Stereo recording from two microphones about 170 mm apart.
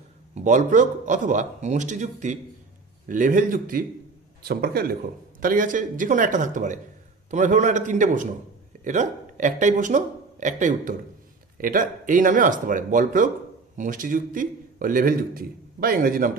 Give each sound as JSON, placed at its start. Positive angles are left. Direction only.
{"t": 0.3, "sound": "a man's voice", "side_deg": -45}
{"t": 4.5, "sound": "a man's voice", "side_deg": -65}
{"t": 5.4, "sound": "a man's voice", "side_deg": -50}